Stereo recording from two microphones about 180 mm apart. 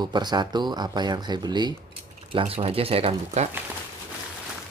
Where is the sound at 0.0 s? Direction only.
25° right (ahead or behind).